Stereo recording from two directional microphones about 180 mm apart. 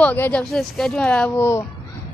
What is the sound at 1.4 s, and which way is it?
Speech, 15° left (ahead or behind).